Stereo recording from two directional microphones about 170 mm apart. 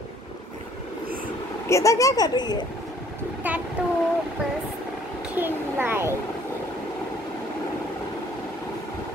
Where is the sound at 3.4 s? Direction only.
10° right (ahead or behind).